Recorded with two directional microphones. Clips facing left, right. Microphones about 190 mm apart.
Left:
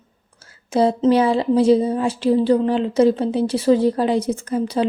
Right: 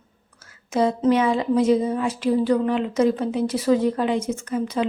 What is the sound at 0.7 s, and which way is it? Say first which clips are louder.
A woman's voice: left 3 dB; 30° left (ahead or behind).